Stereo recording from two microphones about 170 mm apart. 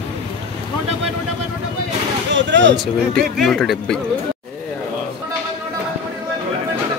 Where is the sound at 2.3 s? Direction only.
90° right.